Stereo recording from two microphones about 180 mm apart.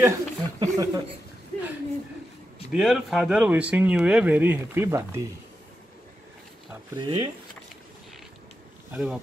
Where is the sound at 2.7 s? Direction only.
Centre (ahead or behind).